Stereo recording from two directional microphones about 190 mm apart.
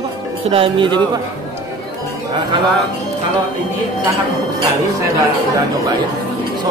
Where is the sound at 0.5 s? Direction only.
25° right (ahead or behind).